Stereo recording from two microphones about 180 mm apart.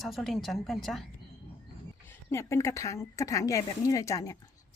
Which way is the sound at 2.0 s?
15° left (ahead or behind).